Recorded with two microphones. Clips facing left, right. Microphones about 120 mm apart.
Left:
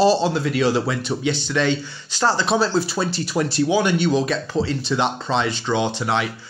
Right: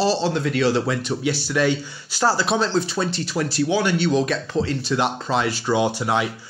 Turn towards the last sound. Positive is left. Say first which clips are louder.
# right 1 dB
turn(degrees=-10)  # may be behind; listen again after turning